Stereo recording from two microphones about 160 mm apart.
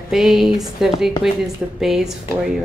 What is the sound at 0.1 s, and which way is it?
A woman's voice, centre (ahead or behind).